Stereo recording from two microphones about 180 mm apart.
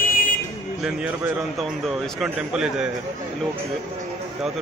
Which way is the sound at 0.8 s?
5° right (ahead or behind).